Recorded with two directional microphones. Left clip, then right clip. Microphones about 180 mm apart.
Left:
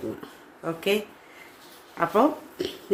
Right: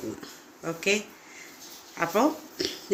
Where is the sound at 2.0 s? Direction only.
10° left (ahead or behind).